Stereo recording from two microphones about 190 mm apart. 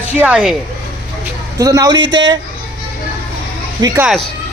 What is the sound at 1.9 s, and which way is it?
Speech, 75° right (ahead or behind).